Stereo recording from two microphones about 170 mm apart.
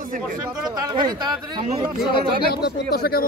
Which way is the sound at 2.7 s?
65° left (ahead or behind).